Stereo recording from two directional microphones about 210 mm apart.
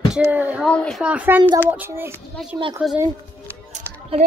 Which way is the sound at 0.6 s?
5° left (ahead or behind).